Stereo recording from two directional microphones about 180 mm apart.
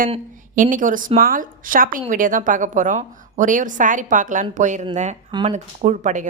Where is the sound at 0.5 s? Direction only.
45° right (ahead or behind).